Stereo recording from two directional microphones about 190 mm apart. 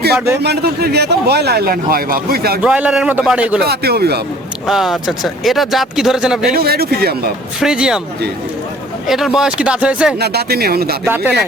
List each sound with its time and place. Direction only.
0.4 s speech: 60° right (ahead or behind)
2.6 s a man's voice: 5° right (ahead or behind)
3.7 s speech: 55° right (ahead or behind)
4.6 s speech: centre (ahead or behind)
6.5 s speech: 55° right (ahead or behind)
7.6 s speech: 5° right (ahead or behind)
9.0 s speech: centre (ahead or behind)
10.2 s speech: 60° right (ahead or behind)
11.0 s a man's voice: 10° right (ahead or behind)